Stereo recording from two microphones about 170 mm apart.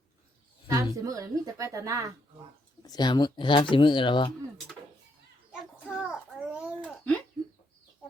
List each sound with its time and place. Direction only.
0.7 s a woman's voice: 20° right (ahead or behind)
2.8 s speech: 25° left (ahead or behind)
5.5 s children playing: 5° right (ahead or behind)